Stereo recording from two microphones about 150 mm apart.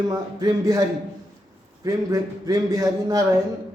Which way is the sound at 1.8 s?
20° right (ahead or behind).